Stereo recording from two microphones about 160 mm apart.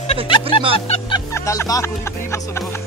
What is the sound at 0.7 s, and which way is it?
Music, 35° left (ahead or behind).